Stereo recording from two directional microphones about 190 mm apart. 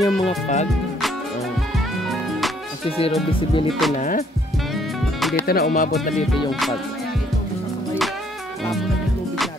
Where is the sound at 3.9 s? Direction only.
45° left (ahead or behind).